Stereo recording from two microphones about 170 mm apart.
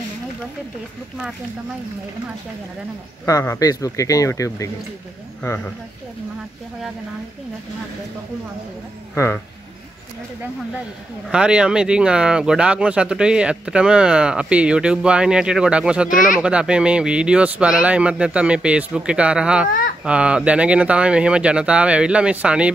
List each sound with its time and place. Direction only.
3.3 s speech: 20° left (ahead or behind)
9.1 s speech: 15° left (ahead or behind)
11.2 s speech: 5° right (ahead or behind)